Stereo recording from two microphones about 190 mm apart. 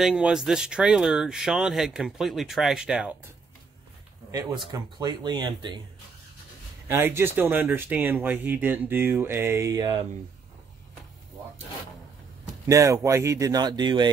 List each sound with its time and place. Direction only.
0.0 s speech: 5° right (ahead or behind)
4.3 s speech: 15° right (ahead or behind)
6.9 s speech: 15° right (ahead or behind)
12.6 s speech: 15° right (ahead or behind)